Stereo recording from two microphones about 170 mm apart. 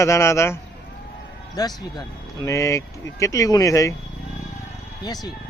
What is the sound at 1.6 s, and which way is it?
Speech, 25° left (ahead or behind).